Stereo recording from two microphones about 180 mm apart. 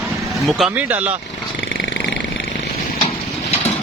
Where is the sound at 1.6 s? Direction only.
65° left (ahead or behind).